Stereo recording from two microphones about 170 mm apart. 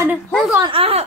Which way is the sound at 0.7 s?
35° right (ahead or behind).